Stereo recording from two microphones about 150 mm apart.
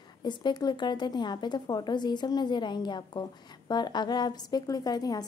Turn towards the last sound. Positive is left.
turn(degrees=25)  # may be behind; listen again after turning